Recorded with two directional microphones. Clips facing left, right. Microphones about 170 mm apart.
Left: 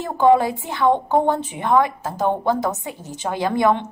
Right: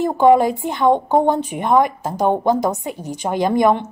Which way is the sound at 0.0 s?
15° right (ahead or behind).